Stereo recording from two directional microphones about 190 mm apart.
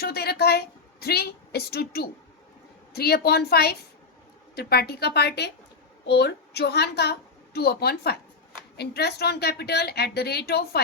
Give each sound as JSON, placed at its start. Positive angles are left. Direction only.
{"t": 0.0, "sound": "a woman's voice", "side_deg": 55}